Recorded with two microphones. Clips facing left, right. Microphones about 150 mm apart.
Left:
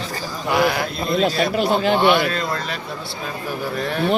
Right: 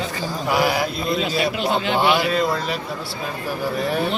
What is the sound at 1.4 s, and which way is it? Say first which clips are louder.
Speech: left 3 dB; 40° left (ahead or behind).